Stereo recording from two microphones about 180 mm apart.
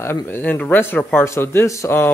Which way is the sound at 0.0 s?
15° left (ahead or behind).